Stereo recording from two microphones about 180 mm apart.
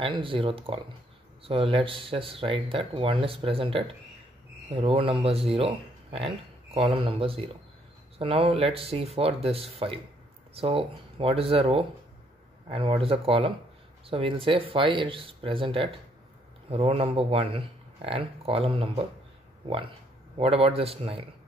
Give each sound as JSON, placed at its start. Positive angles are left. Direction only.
{"t": 0.0, "sound": "speech", "side_deg": -30}
{"t": 20.3, "sound": "speech", "side_deg": -30}